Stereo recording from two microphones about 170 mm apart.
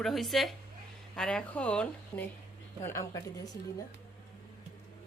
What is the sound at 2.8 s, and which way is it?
Speech, 15° left (ahead or behind).